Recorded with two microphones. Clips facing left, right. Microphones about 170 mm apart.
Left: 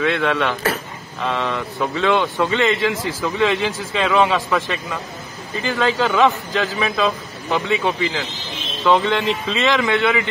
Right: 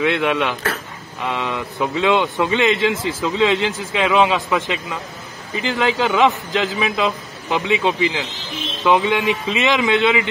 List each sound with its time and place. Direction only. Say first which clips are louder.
0.0 s a man's voice: right 1 dB; 15° right (ahead or behind)